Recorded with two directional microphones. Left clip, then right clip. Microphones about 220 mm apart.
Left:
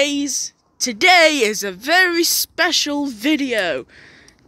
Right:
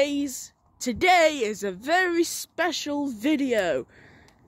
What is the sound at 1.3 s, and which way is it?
Speech, 20° left (ahead or behind).